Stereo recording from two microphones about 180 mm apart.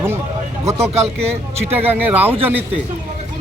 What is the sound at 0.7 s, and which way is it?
Speech, 15° right (ahead or behind).